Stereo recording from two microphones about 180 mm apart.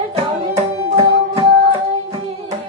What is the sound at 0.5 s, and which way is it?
Tabla, 30° right (ahead or behind).